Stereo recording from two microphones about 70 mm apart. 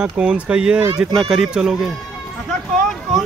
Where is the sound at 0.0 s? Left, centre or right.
Centre.